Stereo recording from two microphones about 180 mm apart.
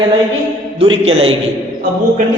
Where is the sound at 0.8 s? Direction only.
30° right (ahead or behind).